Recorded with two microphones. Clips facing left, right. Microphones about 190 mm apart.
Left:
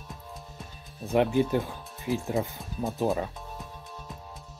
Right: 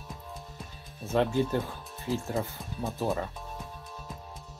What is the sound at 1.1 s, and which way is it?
Speech, 15° left (ahead or behind).